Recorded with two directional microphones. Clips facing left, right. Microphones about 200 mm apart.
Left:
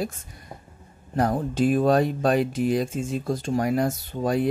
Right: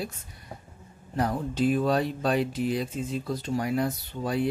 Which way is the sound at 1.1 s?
45° left (ahead or behind).